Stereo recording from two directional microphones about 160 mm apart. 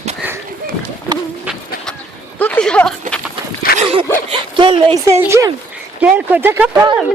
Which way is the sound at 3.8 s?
40° right (ahead or behind).